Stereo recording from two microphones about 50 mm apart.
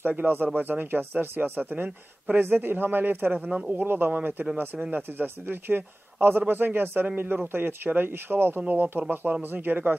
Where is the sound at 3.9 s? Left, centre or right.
Right.